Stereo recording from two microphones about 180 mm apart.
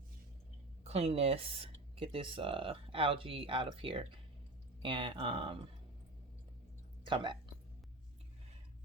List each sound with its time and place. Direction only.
0.9 s speech: 35° right (ahead or behind)
7.0 s speech: 25° right (ahead or behind)